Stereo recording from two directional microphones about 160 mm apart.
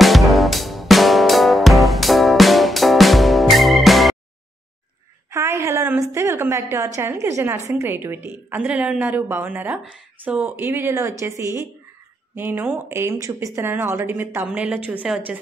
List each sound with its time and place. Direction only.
0.0 s music: centre (ahead or behind)
5.3 s a woman's voice: 15° right (ahead or behind)